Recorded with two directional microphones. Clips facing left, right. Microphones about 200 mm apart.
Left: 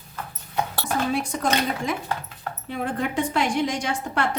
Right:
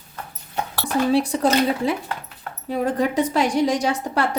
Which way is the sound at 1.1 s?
35° right (ahead or behind).